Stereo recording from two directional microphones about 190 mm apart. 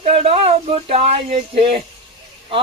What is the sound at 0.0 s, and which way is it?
A man's voice, 30° right (ahead or behind).